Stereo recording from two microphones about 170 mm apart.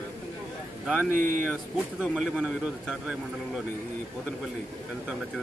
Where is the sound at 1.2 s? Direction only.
50° right (ahead or behind).